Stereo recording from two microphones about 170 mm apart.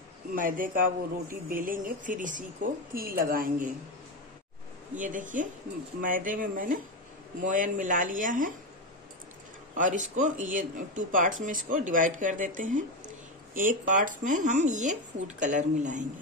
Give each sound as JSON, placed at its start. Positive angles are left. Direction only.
{"t": 0.4, "sound": "a woman's voice", "side_deg": -55}
{"t": 5.0, "sound": "speech", "side_deg": -50}
{"t": 9.8, "sound": "speech", "side_deg": -50}